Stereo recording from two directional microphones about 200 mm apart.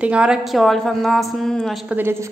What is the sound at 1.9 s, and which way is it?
Speech, 10° right (ahead or behind).